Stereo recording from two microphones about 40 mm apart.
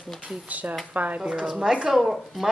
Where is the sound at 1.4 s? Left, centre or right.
Right.